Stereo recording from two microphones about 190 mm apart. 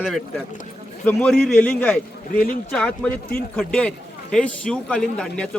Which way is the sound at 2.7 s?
5° left (ahead or behind).